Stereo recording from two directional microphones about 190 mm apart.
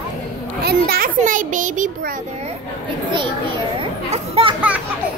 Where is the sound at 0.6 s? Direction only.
55° right (ahead or behind).